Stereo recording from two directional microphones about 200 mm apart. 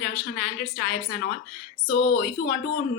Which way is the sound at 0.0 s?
50° left (ahead or behind).